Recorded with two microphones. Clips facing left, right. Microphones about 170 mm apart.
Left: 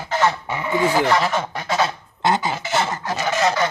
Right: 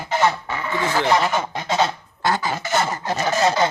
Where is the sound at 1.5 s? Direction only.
25° right (ahead or behind).